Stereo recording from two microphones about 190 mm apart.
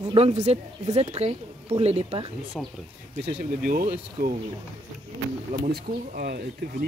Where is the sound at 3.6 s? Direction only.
50° right (ahead or behind).